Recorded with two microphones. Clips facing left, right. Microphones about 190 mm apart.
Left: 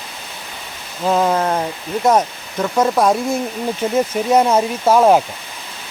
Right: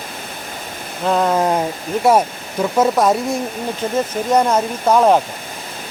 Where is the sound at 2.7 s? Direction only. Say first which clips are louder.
Even; 5° right (ahead or behind).